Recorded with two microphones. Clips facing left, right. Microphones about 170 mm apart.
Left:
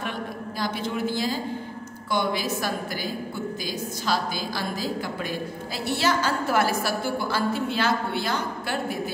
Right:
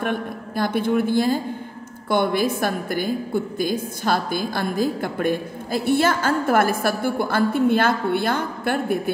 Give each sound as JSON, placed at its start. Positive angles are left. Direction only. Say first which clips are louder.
{"t": 0.0, "sound": "a woman's voice", "louder": "right 6 dB", "side_deg": -55}